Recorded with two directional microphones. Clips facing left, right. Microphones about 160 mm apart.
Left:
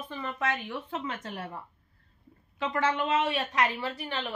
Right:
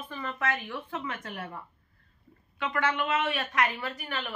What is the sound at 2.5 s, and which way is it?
A woman's voice, 30° left (ahead or behind).